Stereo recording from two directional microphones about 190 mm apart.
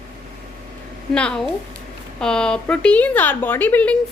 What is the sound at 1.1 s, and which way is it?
A woman's voice, 5° left (ahead or behind).